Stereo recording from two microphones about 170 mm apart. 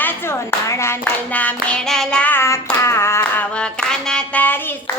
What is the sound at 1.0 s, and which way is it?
Hands, 5° left (ahead or behind).